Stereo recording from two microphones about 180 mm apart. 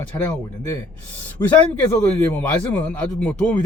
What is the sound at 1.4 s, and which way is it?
Speech, 25° left (ahead or behind).